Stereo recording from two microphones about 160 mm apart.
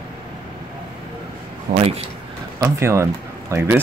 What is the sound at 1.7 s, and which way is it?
Speech, 65° right (ahead or behind).